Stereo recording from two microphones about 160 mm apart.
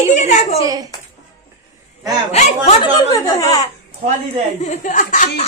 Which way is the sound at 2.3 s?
40° left (ahead or behind).